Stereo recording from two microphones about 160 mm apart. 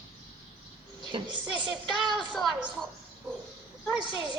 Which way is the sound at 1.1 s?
30° right (ahead or behind).